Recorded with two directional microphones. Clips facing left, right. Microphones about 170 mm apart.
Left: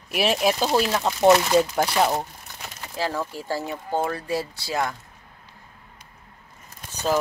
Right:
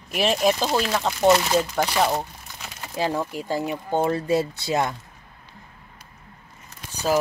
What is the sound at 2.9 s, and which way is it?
Speech, 20° right (ahead or behind).